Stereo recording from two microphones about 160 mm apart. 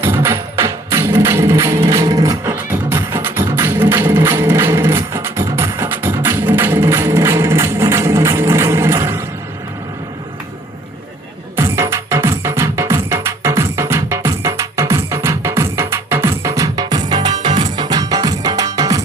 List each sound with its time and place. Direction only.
0.0 s music: 15° right (ahead or behind)
11.5 s music: 15° right (ahead or behind)